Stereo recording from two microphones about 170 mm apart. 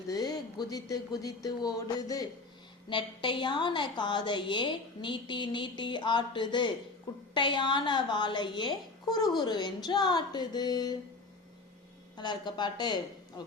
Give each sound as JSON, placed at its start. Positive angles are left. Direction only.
{"t": 0.1, "sound": "a woman's voice", "side_deg": 20}
{"t": 12.1, "sound": "a woman's voice", "side_deg": 25}